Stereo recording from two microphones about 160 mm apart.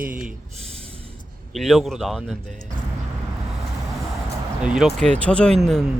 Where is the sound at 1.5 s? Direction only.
Centre (ahead or behind).